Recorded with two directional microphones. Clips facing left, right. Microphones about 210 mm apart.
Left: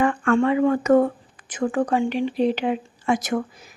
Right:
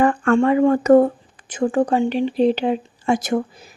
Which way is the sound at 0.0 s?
40° right (ahead or behind).